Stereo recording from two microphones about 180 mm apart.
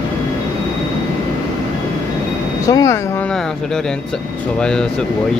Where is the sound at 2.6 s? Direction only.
20° left (ahead or behind).